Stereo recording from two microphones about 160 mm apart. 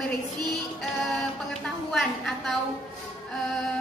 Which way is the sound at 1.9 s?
Centre (ahead or behind).